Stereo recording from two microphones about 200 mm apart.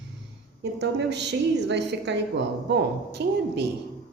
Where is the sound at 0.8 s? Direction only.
60° right (ahead or behind).